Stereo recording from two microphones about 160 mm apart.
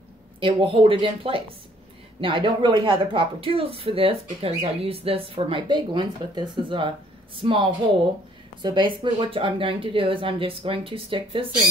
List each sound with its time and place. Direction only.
0.4 s a woman's voice: 35° right (ahead or behind)